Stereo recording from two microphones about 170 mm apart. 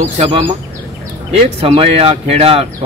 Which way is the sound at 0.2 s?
30° right (ahead or behind).